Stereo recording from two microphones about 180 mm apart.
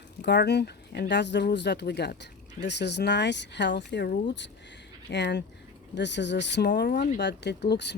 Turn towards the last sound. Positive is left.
turn(degrees=70)  # may be behind; listen again after turning